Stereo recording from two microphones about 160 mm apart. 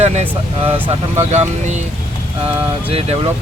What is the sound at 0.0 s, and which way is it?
Speech, 40° right (ahead or behind).